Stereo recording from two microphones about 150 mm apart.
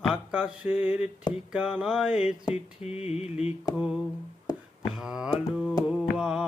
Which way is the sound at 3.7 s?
5° right (ahead or behind).